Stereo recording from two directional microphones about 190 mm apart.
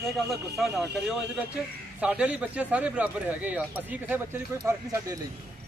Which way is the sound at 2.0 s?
5° right (ahead or behind).